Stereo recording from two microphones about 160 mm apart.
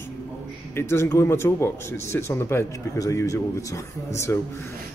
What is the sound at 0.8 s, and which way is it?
Speech, 15° left (ahead or behind).